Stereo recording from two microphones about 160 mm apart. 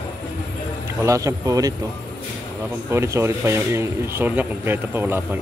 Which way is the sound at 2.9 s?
15° right (ahead or behind).